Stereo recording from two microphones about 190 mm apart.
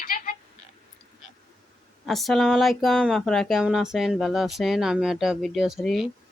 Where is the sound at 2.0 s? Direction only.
Centre (ahead or behind).